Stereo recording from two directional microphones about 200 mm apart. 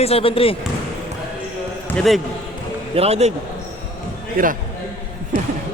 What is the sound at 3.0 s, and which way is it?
Speech, 30° right (ahead or behind).